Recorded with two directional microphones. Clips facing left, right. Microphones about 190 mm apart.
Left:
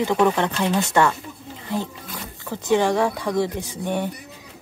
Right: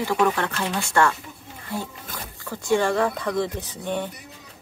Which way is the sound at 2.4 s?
20° left (ahead or behind).